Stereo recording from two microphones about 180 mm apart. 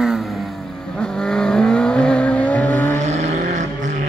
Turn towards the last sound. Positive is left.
turn(degrees=-40)  # may be behind; listen again after turning